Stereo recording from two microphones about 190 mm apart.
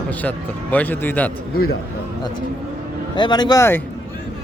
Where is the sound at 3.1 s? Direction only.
25° left (ahead or behind).